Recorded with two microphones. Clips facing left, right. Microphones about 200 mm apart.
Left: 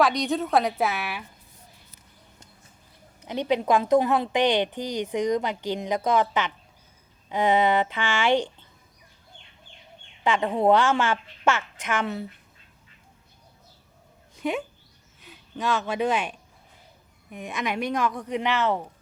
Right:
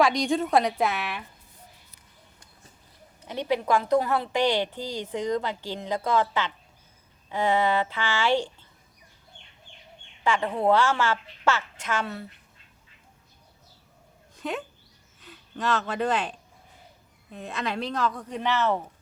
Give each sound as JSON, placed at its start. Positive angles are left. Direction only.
{"t": 0.0, "sound": "a woman's voice", "side_deg": 0}
{"t": 3.2, "sound": "a woman's voice", "side_deg": 20}
{"t": 10.2, "sound": "a woman's voice", "side_deg": 20}
{"t": 14.3, "sound": "speech", "side_deg": 10}
{"t": 17.3, "sound": "a woman's voice", "side_deg": 15}